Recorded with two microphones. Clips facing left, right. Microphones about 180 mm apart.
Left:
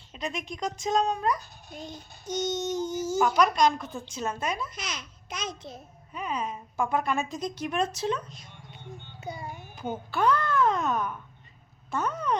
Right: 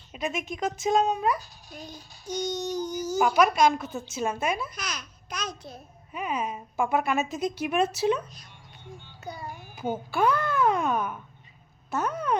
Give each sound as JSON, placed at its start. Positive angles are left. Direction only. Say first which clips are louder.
{"t": 0.1, "sound": "speech", "louder": "right 3 dB", "side_deg": -5}
{"t": 1.7, "sound": "child singing", "louder": "left 2 dB", "side_deg": 25}
{"t": 3.3, "sound": "speech", "louder": "right 4 dB", "side_deg": -5}
{"t": 4.7, "sound": "a child's voice", "louder": "right 1 dB", "side_deg": 25}
{"t": 6.1, "sound": "speech", "louder": "right 2 dB", "side_deg": -10}
{"t": 9.2, "sound": "child singing", "louder": "even", "side_deg": 25}
{"t": 9.7, "sound": "speech", "louder": "right 3 dB", "side_deg": -10}